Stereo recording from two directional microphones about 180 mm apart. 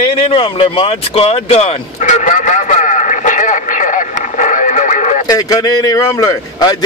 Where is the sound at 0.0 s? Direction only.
30° left (ahead or behind).